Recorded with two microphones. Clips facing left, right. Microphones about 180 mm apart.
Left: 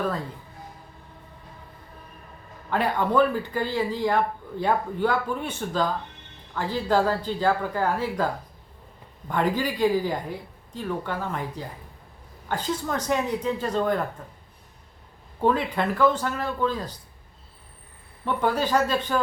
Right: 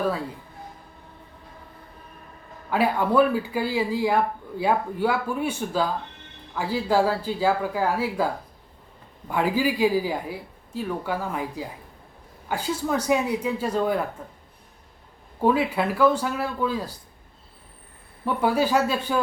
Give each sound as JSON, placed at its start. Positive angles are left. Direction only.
{"t": 2.6, "sound": "speech", "side_deg": -10}
{"t": 9.3, "sound": "speech", "side_deg": -5}
{"t": 15.4, "sound": "speech", "side_deg": -10}
{"t": 18.3, "sound": "speech", "side_deg": -10}